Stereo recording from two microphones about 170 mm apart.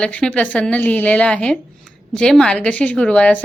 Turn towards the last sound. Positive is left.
turn(degrees=5)  # may be behind; listen again after turning